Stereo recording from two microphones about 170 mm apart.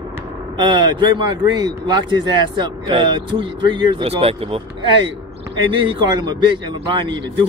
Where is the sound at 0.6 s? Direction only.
25° right (ahead or behind).